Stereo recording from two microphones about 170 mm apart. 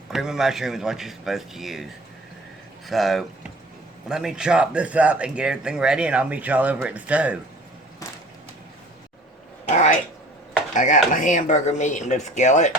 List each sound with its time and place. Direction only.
0.1 s speech: 5° right (ahead or behind)
10.8 s speech: 45° left (ahead or behind)